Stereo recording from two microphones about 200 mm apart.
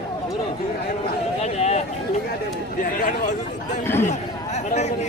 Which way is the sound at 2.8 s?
40° left (ahead or behind).